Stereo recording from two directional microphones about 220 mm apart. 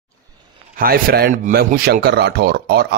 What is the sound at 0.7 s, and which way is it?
Speech, 40° right (ahead or behind).